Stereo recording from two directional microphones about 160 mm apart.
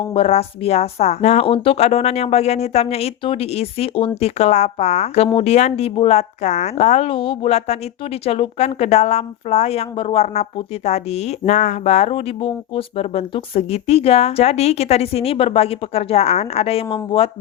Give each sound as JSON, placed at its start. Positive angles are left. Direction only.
{"t": 0.1, "sound": "speech", "side_deg": 40}